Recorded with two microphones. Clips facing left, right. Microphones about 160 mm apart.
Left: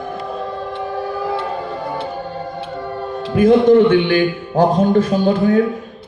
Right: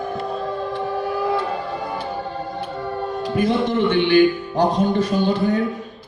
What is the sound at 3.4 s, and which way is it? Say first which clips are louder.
Speech: left 10 dB; 50° left (ahead or behind).